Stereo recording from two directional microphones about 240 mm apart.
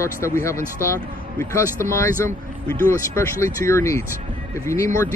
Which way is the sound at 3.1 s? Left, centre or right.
Centre.